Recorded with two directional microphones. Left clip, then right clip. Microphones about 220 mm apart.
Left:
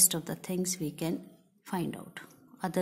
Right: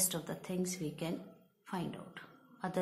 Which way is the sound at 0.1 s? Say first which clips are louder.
Left 5 dB; 45° left (ahead or behind).